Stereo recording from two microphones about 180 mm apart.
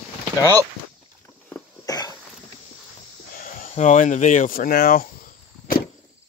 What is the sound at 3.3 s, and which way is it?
Speech, 45° left (ahead or behind).